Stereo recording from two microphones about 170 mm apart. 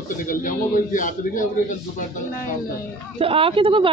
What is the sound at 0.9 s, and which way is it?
Speech, 50° left (ahead or behind).